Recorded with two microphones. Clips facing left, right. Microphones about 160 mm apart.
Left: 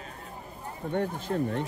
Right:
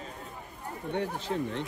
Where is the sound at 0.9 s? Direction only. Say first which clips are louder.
Left 2 dB; 50° left (ahead or behind).